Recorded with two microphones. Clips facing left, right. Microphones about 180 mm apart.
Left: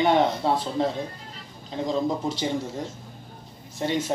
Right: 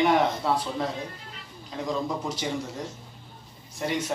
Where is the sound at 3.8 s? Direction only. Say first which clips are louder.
Left 2 dB; 30° left (ahead or behind).